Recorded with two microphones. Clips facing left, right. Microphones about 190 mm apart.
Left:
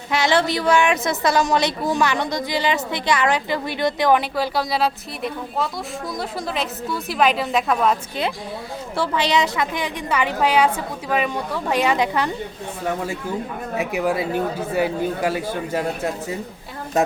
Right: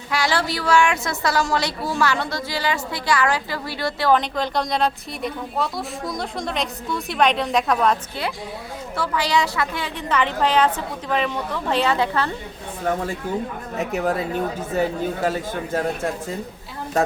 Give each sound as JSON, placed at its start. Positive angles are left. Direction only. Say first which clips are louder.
{"t": 0.1, "sound": "a woman's voice", "louder": "left 4 dB", "side_deg": 20}
{"t": 9.0, "sound": "a woman's voice", "louder": "left 2 dB", "side_deg": 20}
{"t": 13.7, "sound": "a woman's voice", "louder": "left 1 dB", "side_deg": 10}